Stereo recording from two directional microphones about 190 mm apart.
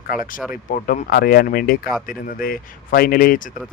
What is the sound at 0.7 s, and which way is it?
Speech, 45° left (ahead or behind).